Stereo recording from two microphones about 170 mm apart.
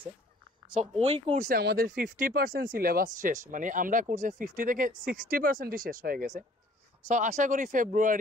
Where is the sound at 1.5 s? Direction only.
65° right (ahead or behind).